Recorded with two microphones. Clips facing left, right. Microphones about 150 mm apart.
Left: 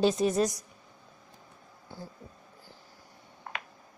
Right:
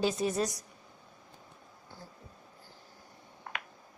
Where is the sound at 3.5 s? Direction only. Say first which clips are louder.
Left 2 dB; 30° left (ahead or behind).